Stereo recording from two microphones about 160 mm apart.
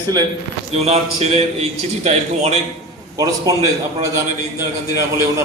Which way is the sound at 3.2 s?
20° right (ahead or behind).